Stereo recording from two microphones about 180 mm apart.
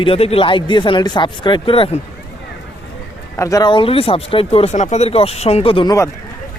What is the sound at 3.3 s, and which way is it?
Speech, 15° left (ahead or behind).